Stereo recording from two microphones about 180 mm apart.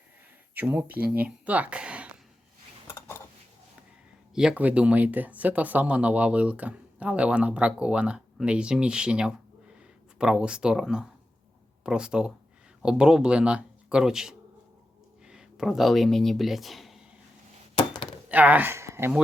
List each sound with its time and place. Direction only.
0.5 s speech: 10° right (ahead or behind)
0.9 s speech: 60° right (ahead or behind)
1.1 s speech: 10° right (ahead or behind)
4.4 s speech: 5° right (ahead or behind)
17.7 s chopping: 25° left (ahead or behind)
18.3 s speech: 10° right (ahead or behind)